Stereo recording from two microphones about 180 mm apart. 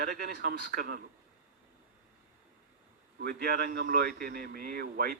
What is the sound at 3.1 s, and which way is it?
A man's voice, 60° right (ahead or behind).